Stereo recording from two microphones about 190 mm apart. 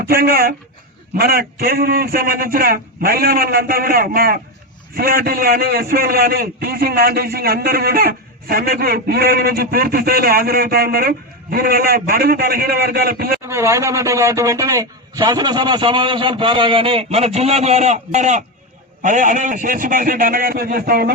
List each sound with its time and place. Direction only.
0.0 s a man's voice: 55° right (ahead or behind)
13.5 s a man's voice: 15° right (ahead or behind); by 21.1 s 50° right (ahead or behind)